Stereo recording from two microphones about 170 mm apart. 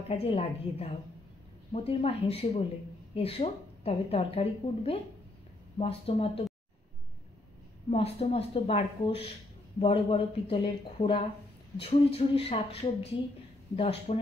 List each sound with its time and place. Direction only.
0.1 s speech: 35° left (ahead or behind)
7.9 s speech: 35° left (ahead or behind)
13.7 s speech: 35° left (ahead or behind)